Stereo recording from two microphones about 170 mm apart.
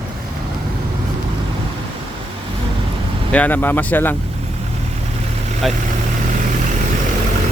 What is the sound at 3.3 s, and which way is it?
Speech, 10° left (ahead or behind).